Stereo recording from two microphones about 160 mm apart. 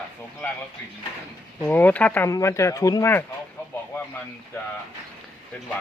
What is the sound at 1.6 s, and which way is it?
Speech, 10° left (ahead or behind).